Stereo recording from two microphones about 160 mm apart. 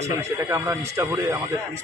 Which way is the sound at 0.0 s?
15° right (ahead or behind).